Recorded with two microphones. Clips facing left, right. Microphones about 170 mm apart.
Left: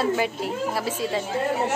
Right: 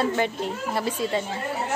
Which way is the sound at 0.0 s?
5° left (ahead or behind).